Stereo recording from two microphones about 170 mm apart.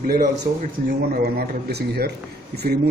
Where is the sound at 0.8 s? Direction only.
60° right (ahead or behind).